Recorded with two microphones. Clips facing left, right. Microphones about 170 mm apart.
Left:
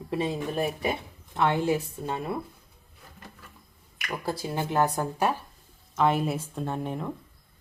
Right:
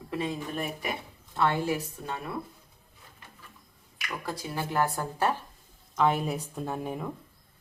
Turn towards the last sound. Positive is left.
turn(degrees=-5)  # may be behind; listen again after turning